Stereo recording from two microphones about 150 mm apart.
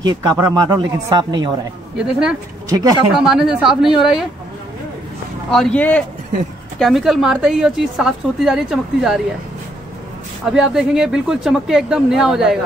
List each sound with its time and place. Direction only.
0.0 s speech: 25° right (ahead or behind)
2.0 s a woman's voice: 5° right (ahead or behind)
2.7 s speech: 25° right (ahead or behind)
3.2 s a woman's voice: 5° right (ahead or behind)
5.5 s speech: 5° left (ahead or behind)
6.8 s a woman's voice: centre (ahead or behind)
10.4 s a woman's voice: 5° right (ahead or behind)